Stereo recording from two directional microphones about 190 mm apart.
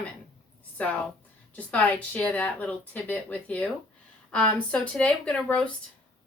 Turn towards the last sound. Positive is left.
turn(degrees=5)  # may be behind; listen again after turning